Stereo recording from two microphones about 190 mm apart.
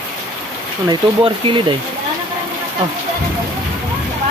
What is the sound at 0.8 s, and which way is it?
Speech, 25° right (ahead or behind).